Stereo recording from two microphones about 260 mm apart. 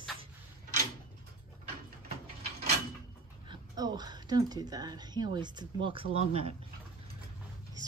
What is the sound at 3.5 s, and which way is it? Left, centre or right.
Speech, centre.